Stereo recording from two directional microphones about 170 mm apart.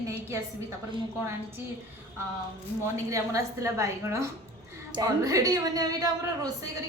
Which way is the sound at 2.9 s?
20° right (ahead or behind).